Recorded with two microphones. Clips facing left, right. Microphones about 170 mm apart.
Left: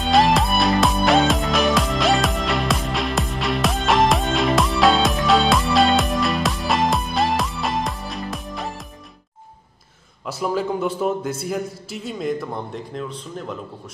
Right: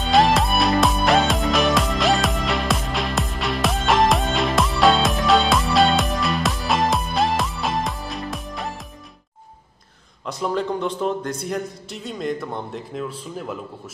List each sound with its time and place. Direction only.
0.0 s music: centre (ahead or behind)
10.2 s a man's voice: 5° left (ahead or behind)